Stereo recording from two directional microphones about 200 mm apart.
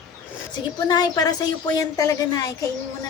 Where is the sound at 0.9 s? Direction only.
20° left (ahead or behind).